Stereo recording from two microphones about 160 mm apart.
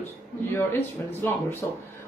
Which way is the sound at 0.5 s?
15° left (ahead or behind).